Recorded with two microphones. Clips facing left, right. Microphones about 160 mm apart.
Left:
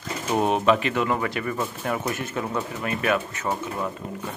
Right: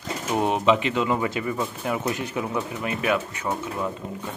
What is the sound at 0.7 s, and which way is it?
Speech, 15° right (ahead or behind).